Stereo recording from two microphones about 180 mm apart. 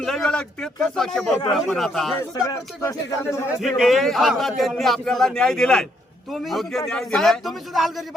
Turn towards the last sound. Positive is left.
turn(degrees=0)  # may be behind; listen again after turning